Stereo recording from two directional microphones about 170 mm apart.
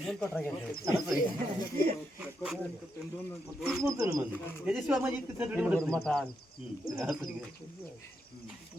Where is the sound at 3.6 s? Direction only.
Centre (ahead or behind).